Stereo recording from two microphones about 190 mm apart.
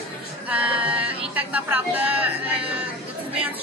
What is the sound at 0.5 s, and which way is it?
A woman's voice, 5° right (ahead or behind).